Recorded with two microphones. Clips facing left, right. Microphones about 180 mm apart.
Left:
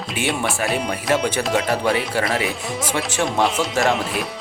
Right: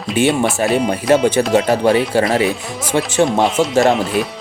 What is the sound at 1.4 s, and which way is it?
Speech, 35° right (ahead or behind).